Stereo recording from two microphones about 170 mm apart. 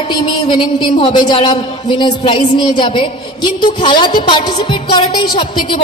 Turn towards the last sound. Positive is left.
turn(degrees=30)  # may be behind; listen again after turning